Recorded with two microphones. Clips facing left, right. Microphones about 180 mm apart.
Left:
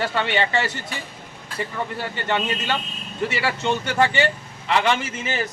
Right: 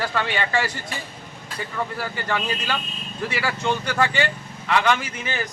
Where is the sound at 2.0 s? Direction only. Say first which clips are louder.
Left 5 dB; 25° left (ahead or behind).